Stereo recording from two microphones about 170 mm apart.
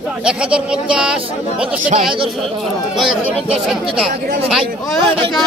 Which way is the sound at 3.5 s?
5° right (ahead or behind).